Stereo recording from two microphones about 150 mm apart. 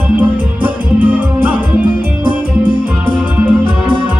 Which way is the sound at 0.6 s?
10° right (ahead or behind).